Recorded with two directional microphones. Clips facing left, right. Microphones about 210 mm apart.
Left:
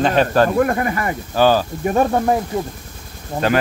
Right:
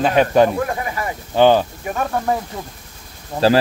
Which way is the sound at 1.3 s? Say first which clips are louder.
Right 2 dB; 20° right (ahead or behind).